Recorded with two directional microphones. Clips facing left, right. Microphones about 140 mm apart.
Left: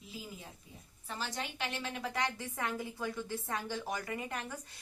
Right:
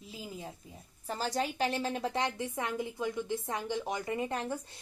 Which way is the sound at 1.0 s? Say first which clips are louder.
Right 7 dB; 40° right (ahead or behind).